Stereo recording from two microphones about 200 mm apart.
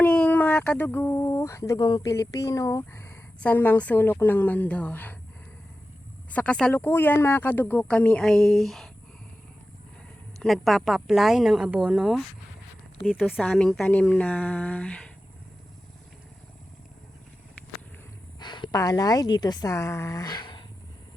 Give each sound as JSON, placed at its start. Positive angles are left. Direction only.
{"t": 0.0, "sound": "speech", "side_deg": 10}
{"t": 6.3, "sound": "speech", "side_deg": 5}
{"t": 10.4, "sound": "a woman's voice", "side_deg": 0}
{"t": 18.3, "sound": "a woman's voice", "side_deg": 20}